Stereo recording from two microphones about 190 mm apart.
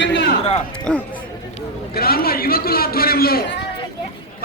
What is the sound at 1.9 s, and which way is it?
A man's voice, 55° left (ahead or behind).